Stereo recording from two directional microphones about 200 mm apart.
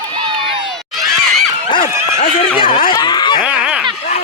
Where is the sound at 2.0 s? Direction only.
30° left (ahead or behind).